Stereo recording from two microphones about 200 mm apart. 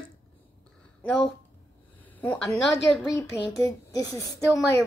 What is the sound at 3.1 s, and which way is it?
Speech, 15° left (ahead or behind).